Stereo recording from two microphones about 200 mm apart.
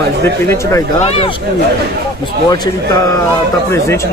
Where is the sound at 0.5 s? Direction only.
15° left (ahead or behind).